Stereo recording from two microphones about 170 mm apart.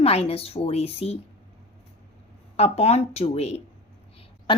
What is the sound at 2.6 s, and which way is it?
A woman's voice, 40° left (ahead or behind).